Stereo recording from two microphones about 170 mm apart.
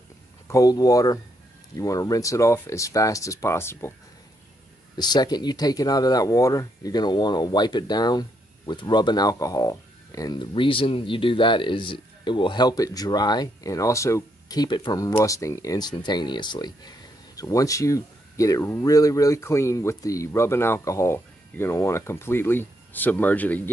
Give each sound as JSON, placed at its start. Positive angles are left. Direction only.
{"t": 0.5, "sound": "speech", "side_deg": 20}
{"t": 4.9, "sound": "speech", "side_deg": 25}